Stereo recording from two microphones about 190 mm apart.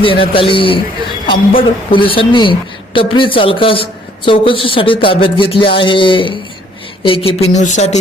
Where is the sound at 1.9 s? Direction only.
25° left (ahead or behind).